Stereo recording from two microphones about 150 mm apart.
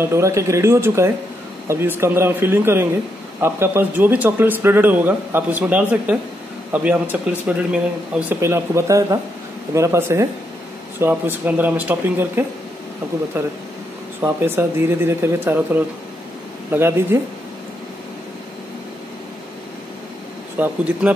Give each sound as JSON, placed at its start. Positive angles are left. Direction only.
{"t": 0.0, "sound": "speech", "side_deg": -20}
{"t": 8.4, "sound": "speech", "side_deg": -20}
{"t": 14.2, "sound": "speech", "side_deg": -15}
{"t": 20.5, "sound": "speech", "side_deg": -10}